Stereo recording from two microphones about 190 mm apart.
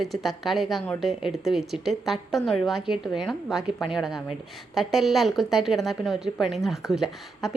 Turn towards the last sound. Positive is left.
turn(degrees=0)  # may be behind; listen again after turning